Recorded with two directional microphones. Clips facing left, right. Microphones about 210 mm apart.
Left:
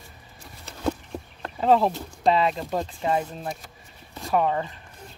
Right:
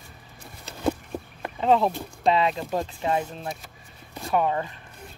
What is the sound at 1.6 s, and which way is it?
Speech, 5° left (ahead or behind).